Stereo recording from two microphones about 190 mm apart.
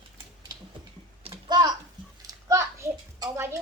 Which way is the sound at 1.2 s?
25° right (ahead or behind).